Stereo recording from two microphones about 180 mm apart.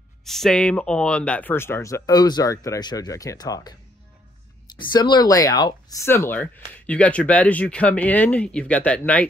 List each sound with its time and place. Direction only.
0.2 s speech: centre (ahead or behind); by 3.7 s 20° left (ahead or behind)
4.7 s speech: 25° left (ahead or behind); by 9.3 s 5° left (ahead or behind)